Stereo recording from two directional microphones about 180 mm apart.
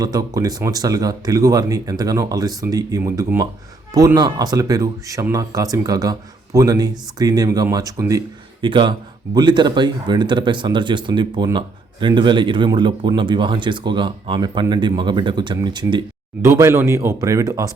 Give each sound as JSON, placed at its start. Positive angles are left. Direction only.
{"t": 0.0, "sound": "speech", "side_deg": -20}